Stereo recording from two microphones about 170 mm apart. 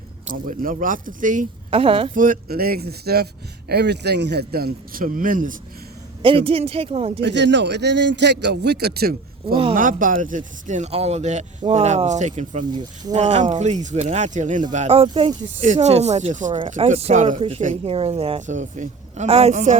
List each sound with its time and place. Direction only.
0.4 s speech: 55° right (ahead or behind)
1.7 s speech: 35° right (ahead or behind)
2.1 s a man's voice: 55° right (ahead or behind)
6.2 s speech: 35° right (ahead or behind)
7.2 s speech: 90° right; by 9.6 s 65° right (ahead or behind)
9.7 s speech: 50° right (ahead or behind); by 15.6 s 30° right (ahead or behind)
15.6 s speech: 45° right (ahead or behind)
17.9 s speech: 35° right (ahead or behind)